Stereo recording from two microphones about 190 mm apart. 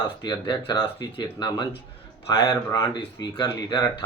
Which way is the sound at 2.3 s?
25° left (ahead or behind).